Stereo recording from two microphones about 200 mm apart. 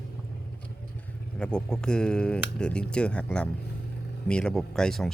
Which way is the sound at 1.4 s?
5° left (ahead or behind).